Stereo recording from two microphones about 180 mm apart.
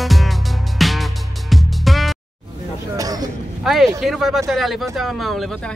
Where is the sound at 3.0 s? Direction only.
20° right (ahead or behind).